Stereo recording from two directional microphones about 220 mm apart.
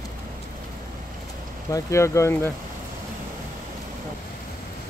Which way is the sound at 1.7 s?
15° left (ahead or behind).